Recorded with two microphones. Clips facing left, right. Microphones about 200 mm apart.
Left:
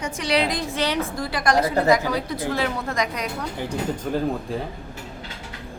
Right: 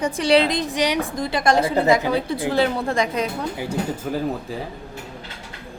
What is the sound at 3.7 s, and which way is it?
Speech, 5° right (ahead or behind).